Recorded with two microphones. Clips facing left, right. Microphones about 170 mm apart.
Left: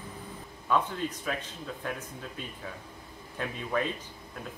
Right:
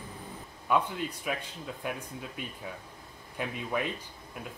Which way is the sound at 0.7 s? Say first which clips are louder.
Even; 15° right (ahead or behind).